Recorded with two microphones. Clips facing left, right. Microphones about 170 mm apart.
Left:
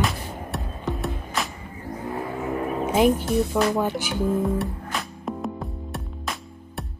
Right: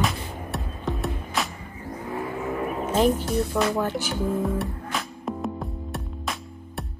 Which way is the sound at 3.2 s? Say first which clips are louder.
Left 2 dB; centre (ahead or behind).